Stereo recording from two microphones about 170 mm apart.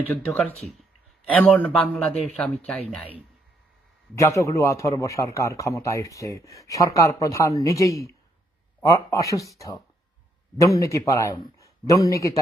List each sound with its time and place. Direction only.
0.1 s a man's voice: centre (ahead or behind)
4.1 s a man's voice: 15° left (ahead or behind)